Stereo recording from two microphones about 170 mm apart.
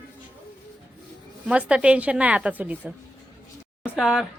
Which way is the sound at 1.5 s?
5° right (ahead or behind).